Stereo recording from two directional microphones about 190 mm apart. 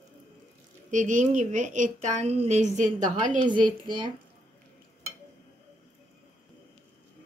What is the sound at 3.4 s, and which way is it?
Speech, 25° right (ahead or behind).